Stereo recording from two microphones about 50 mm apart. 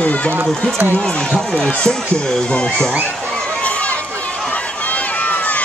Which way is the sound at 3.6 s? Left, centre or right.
Left.